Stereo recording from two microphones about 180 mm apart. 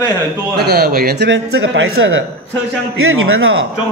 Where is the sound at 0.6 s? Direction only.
60° right (ahead or behind); by 2.2 s 90° right.